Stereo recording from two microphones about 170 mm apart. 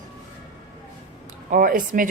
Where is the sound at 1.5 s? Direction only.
55° right (ahead or behind).